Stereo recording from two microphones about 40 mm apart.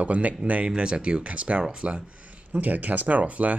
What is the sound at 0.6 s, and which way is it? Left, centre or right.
Speech, right.